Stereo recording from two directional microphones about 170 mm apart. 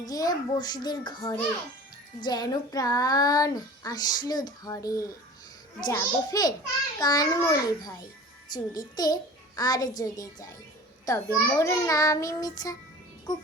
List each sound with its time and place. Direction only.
0.0 s child singing: 20° left (ahead or behind)